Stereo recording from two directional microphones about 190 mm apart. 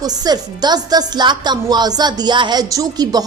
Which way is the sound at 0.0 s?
20° right (ahead or behind).